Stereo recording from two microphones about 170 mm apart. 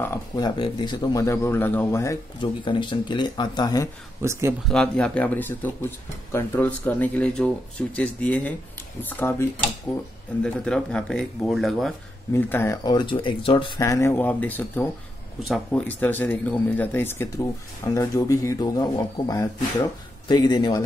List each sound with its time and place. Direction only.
0.0 s speech: 15° left (ahead or behind)
0.6 s speech: 25° left (ahead or behind)
2.4 s speech: 30° left (ahead or behind)
4.2 s speech: 15° right (ahead or behind)
4.6 s speech: 5° left (ahead or behind)
12.3 s speech: 10° left (ahead or behind); by 13.7 s 30° left (ahead or behind)
13.7 s speech: 20° left (ahead or behind)